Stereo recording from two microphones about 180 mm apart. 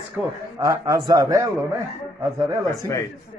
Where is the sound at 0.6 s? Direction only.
20° right (ahead or behind).